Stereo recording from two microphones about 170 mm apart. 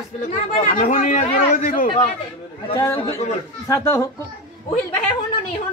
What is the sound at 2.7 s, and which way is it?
A man's voice, 25° left (ahead or behind).